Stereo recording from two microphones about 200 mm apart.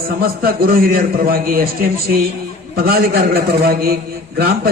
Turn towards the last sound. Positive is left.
turn(degrees=-50)  # may be behind; listen again after turning